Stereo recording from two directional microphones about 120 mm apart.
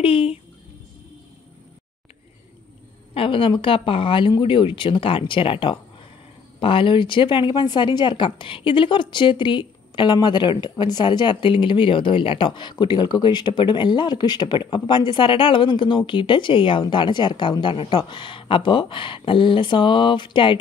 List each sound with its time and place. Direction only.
0.0 s speech: 50° left (ahead or behind)
3.2 s speech: 45° left (ahead or behind)